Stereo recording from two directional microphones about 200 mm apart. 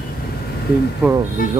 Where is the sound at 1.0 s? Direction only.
5° right (ahead or behind).